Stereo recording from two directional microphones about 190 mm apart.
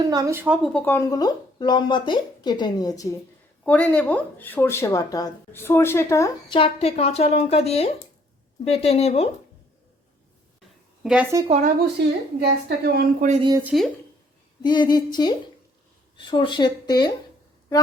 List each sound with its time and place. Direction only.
0.0 s speech: 20° right (ahead or behind)
0.4 s speech: 5° right (ahead or behind)
0.7 s speech: 10° left (ahead or behind)
3.7 s speech: 5° left (ahead or behind)
6.6 s a woman's voice: 35° left (ahead or behind)
11.0 s a woman's voice: 5° right (ahead or behind)
11.4 s speech: 35° right (ahead or behind)
12.4 s a woman's voice: 55° right (ahead or behind)
13.6 s speech: 10° right (ahead or behind)
14.6 s a sound: 25° left (ahead or behind)
14.9 s speech: 20° left (ahead or behind)